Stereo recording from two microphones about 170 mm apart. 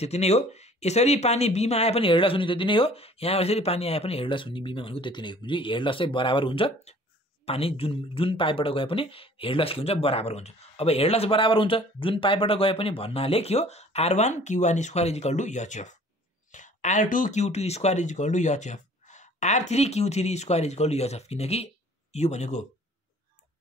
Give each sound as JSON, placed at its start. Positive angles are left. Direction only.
{"t": 0.0, "sound": "speech", "side_deg": 40}